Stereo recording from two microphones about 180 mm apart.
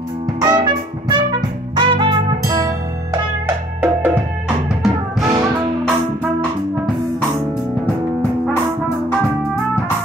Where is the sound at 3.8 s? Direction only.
10° right (ahead or behind).